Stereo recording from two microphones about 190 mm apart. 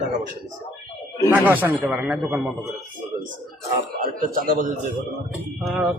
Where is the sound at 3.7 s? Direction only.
35° right (ahead or behind).